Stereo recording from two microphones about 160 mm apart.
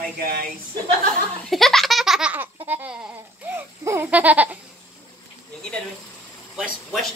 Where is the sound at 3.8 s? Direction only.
10° right (ahead or behind).